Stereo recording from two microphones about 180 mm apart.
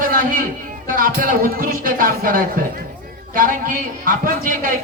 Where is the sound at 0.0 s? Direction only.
50° right (ahead or behind).